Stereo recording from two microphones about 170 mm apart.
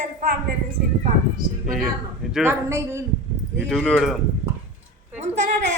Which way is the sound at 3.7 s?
5° left (ahead or behind).